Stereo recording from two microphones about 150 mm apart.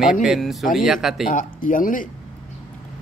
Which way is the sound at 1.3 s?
65° left (ahead or behind).